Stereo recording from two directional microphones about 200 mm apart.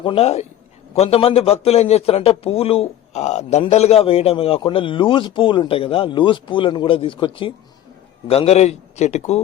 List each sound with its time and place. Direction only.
0.0 s a man's voice: 30° left (ahead or behind)